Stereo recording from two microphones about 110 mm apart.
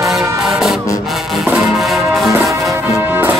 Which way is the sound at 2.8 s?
20° right (ahead or behind).